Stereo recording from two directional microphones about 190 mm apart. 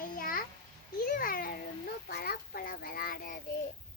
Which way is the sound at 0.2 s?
45° left (ahead or behind).